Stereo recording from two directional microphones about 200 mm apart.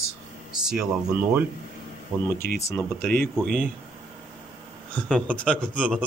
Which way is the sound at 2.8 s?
5° left (ahead or behind).